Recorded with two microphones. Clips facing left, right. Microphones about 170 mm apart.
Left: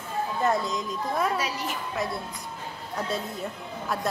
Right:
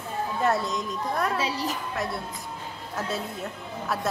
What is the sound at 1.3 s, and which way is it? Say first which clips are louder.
Speech: right 2 dB; 30° right (ahead or behind).